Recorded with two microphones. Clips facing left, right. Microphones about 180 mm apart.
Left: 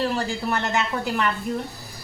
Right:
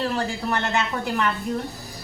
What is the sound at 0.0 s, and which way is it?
A woman's voice, 5° left (ahead or behind).